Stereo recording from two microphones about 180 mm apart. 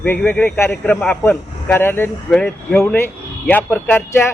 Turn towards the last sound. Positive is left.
turn(degrees=10)  # may be behind; listen again after turning